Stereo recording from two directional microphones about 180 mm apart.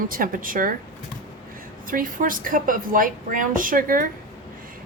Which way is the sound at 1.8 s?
50° right (ahead or behind).